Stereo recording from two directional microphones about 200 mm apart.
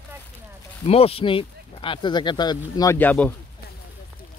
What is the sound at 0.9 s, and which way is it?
Speech, 30° left (ahead or behind).